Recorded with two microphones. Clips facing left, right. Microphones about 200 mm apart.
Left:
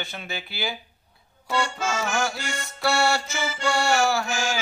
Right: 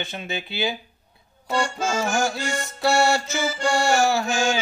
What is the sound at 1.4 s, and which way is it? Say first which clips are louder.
Accordion: right 2 dB; 35° right (ahead or behind).